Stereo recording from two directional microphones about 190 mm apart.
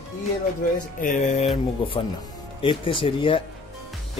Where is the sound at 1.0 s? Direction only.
40° left (ahead or behind).